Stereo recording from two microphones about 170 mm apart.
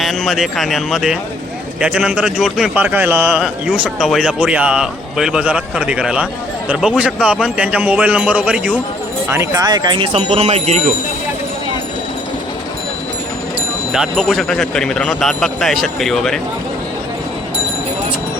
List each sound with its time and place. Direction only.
0.0 s a man's voice: centre (ahead or behind)
9.3 s speech: 20° right (ahead or behind); by 10.8 s 40° right (ahead or behind)
13.9 s a man's voice: 5° right (ahead or behind)